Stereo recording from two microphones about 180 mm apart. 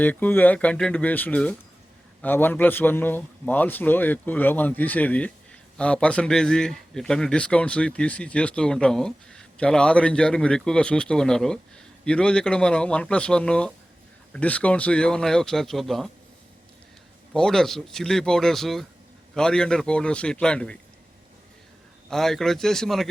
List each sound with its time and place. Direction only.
0.0 s a man's voice: 10° left (ahead or behind)
17.3 s speech: 5° left (ahead or behind)
22.1 s speech: centre (ahead or behind)